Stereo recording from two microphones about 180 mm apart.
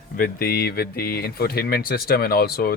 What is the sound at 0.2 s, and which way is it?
Speech, 55° left (ahead or behind).